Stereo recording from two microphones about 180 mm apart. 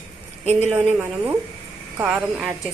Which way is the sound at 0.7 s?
10° right (ahead or behind).